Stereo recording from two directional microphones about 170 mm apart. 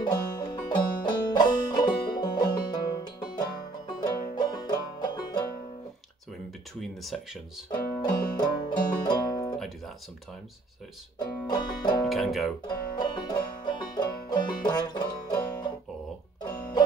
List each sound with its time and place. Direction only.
0.0 s music: 25° left (ahead or behind)
6.8 s speech: centre (ahead or behind)
8.0 s music: 25° left (ahead or behind)
11.1 s speech: 25° left (ahead or behind)
12.0 s speech: centre (ahead or behind)
12.6 s music: 25° left (ahead or behind)